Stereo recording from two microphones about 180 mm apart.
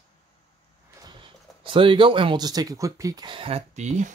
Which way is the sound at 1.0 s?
25° right (ahead or behind).